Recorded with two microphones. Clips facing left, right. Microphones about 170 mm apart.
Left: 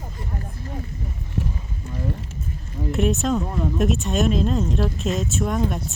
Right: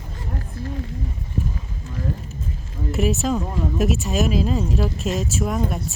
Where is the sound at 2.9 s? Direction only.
Centre (ahead or behind).